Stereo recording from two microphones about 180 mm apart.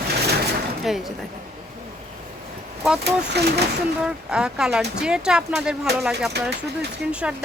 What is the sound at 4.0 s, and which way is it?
Speech, 5° right (ahead or behind).